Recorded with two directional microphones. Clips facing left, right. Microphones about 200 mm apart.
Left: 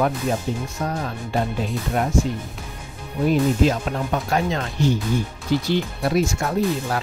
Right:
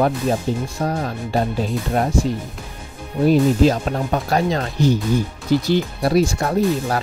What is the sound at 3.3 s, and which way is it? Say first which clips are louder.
Speech: right 4 dB; 35° right (ahead or behind).